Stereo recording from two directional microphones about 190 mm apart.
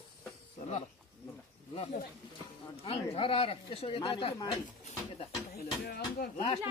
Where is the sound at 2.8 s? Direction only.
30° left (ahead or behind).